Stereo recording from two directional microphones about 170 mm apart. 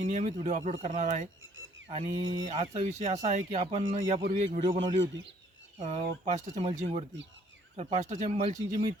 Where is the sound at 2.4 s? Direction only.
45° right (ahead or behind).